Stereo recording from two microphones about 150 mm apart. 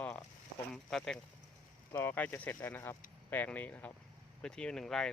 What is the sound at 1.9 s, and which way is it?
Speech, 15° left (ahead or behind).